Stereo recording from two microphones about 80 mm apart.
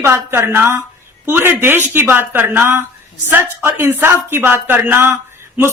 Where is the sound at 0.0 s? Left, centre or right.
Right.